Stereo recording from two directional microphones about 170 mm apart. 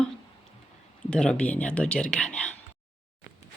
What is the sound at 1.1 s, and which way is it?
Speech, 5° left (ahead or behind).